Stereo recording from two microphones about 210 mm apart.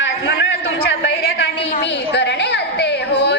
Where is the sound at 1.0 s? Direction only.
50° left (ahead or behind).